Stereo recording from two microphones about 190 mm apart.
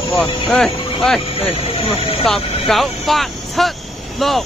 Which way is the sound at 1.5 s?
30° left (ahead or behind).